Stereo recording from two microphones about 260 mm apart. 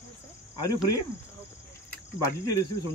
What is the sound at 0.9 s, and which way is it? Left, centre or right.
Cricket, left.